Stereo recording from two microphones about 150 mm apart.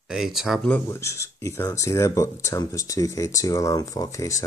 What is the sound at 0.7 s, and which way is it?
Speech, 15° left (ahead or behind).